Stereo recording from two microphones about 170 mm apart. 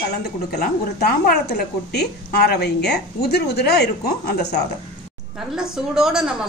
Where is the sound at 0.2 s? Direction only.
70° left (ahead or behind).